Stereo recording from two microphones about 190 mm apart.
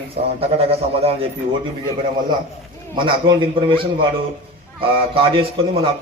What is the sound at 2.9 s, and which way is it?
Speech, 25° right (ahead or behind).